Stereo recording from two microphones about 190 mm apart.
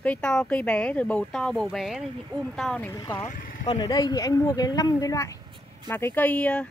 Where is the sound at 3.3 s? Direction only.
45° left (ahead or behind).